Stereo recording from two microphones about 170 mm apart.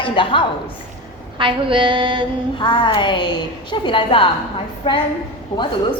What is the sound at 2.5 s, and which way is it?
A woman's voice, 30° left (ahead or behind).